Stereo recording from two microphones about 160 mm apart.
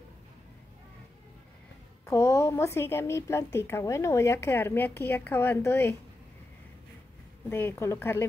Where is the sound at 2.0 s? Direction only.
20° left (ahead or behind).